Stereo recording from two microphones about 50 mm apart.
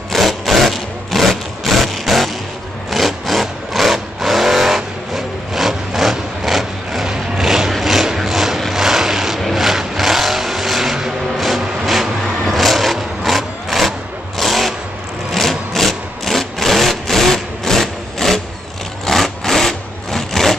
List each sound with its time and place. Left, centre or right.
0.1 s sewing machine: centre
2.9 s vehicle: centre
7.7 s a sound: centre
14.4 s vehicle: centre
15.3 s a sound: centre
19.0 s wood: centre